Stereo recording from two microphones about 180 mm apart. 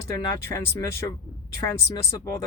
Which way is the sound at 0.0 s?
15° left (ahead or behind).